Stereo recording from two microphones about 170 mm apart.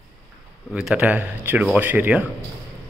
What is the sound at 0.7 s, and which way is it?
Speech, 5° right (ahead or behind).